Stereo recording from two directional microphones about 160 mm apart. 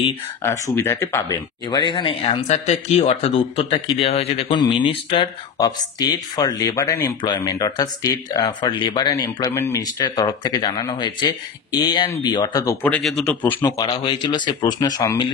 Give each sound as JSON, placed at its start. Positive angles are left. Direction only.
{"t": 0.4, "sound": "speech", "side_deg": 15}
{"t": 4.5, "sound": "speech", "side_deg": 30}
{"t": 12.8, "sound": "speech", "side_deg": 5}